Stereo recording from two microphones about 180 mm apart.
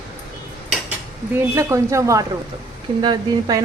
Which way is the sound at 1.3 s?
15° right (ahead or behind).